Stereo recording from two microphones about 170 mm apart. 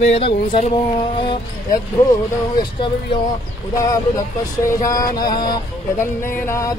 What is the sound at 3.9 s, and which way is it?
Speech, 20° left (ahead or behind).